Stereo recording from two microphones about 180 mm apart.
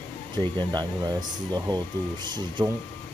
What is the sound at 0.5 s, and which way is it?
Speech, 20° right (ahead or behind).